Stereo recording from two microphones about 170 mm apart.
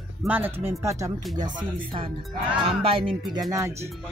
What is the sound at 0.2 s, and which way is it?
Speech, 10° right (ahead or behind).